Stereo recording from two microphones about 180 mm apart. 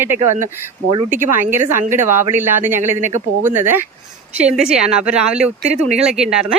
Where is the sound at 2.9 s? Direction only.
45° right (ahead or behind).